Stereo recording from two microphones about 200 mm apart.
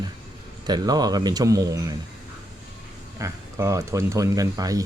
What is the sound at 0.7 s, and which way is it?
A man's voice, 20° right (ahead or behind).